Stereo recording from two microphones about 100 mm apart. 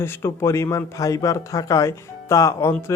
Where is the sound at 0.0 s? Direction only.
25° left (ahead or behind).